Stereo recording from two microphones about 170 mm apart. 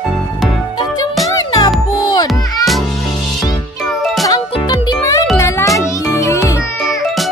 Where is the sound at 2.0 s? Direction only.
25° left (ahead or behind).